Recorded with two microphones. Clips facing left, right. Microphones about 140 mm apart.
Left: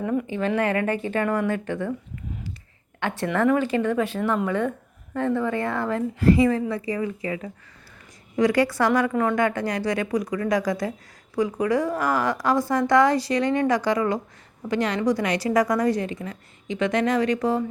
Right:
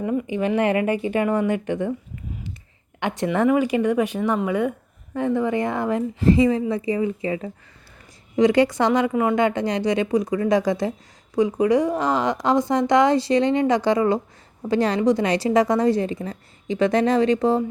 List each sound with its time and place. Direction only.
0.0 s speech: 5° right (ahead or behind)
0.3 s a woman's voice: 15° right (ahead or behind)
3.0 s a woman's voice: 15° right (ahead or behind)